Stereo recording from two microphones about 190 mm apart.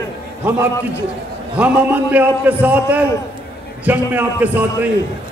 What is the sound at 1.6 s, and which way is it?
A man's voice, 5° right (ahead or behind).